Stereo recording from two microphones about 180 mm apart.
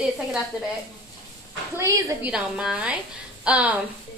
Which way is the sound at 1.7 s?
15° right (ahead or behind).